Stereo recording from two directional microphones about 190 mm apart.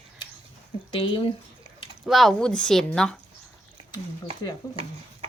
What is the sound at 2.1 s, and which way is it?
Speech, centre (ahead or behind).